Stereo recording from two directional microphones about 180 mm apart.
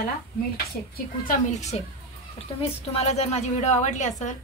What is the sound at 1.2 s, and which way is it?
Speech, 45° left (ahead or behind).